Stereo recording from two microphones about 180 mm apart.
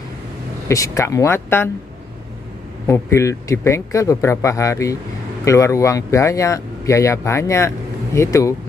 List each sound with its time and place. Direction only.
0.7 s speech: 15° left (ahead or behind)
2.9 s speech: 15° left (ahead or behind)